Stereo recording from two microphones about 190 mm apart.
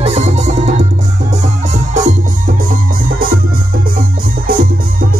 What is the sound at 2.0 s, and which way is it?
Music, 40° right (ahead or behind).